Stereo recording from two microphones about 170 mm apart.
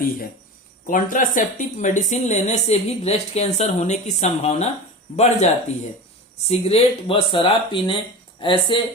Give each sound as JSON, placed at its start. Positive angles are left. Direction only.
{"t": 0.9, "sound": "a woman's voice", "side_deg": 50}